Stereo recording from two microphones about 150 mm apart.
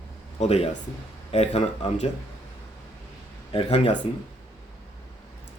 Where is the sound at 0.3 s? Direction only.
45° left (ahead or behind).